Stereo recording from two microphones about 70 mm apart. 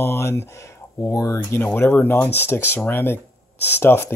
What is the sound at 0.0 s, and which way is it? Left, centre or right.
Speech, left.